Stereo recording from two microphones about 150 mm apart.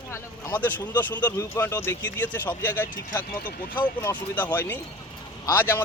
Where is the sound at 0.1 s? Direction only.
15° left (ahead or behind).